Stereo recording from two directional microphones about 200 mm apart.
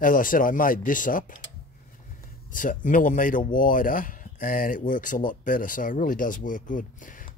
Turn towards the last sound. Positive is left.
turn(degrees=40)  # may be behind; listen again after turning